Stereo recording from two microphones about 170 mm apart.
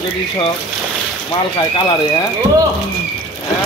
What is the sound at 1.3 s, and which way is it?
Speech, 30° left (ahead or behind).